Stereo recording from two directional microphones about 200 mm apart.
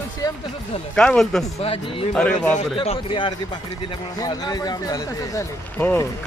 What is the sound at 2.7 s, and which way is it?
Speech, 25° left (ahead or behind).